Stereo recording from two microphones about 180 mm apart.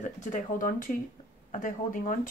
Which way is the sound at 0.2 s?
45° left (ahead or behind).